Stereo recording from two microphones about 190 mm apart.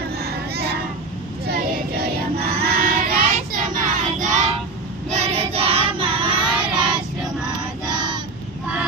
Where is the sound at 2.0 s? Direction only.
55° right (ahead or behind); by 4.5 s 40° right (ahead or behind).